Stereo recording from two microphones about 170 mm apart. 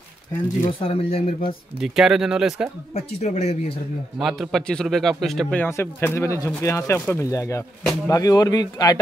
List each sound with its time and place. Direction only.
0.7 s speech: 35° left (ahead or behind)
1.8 s speech: 5° right (ahead or behind)
2.9 s speech: 40° left (ahead or behind)
4.2 s a man's voice: centre (ahead or behind); by 9.0 s 25° left (ahead or behind)